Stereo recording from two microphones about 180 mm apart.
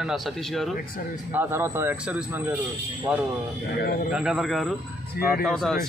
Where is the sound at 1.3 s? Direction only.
10° right (ahead or behind).